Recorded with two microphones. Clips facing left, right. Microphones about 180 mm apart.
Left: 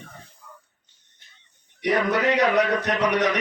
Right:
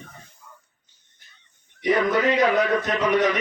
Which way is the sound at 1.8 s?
70° left (ahead or behind).